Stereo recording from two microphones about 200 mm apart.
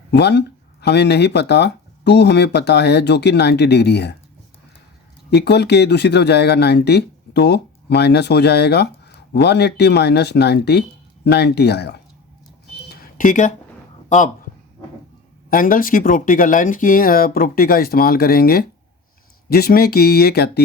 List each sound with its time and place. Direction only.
0.1 s speech: 55° left (ahead or behind)
5.3 s speech: 55° left (ahead or behind)
12.9 s a sound: 45° left (ahead or behind)
15.4 s speech: 45° left (ahead or behind)